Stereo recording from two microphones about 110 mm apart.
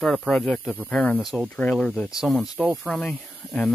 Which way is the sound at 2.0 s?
Centre (ahead or behind).